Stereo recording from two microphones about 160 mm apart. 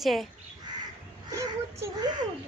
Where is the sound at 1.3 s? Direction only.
20° right (ahead or behind).